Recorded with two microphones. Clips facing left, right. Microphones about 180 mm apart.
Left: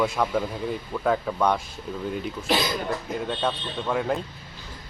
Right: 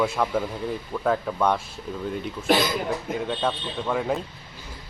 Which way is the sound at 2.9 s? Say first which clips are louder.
Right 1 dB; centre (ahead or behind).